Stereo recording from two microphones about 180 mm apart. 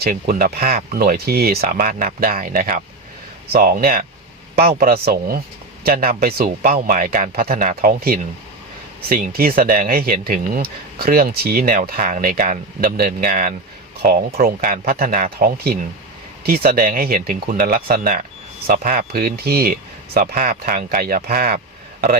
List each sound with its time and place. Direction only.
0.0 s speech: 55° right (ahead or behind)